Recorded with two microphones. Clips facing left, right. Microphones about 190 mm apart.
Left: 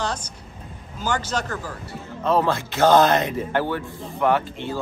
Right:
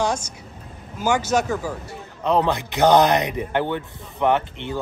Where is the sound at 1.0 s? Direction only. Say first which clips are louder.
Right 5 dB; 10° right (ahead or behind).